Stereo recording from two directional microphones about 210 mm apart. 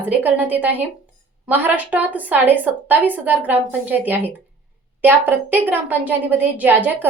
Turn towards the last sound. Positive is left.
turn(degrees=-10)  # may be behind; listen again after turning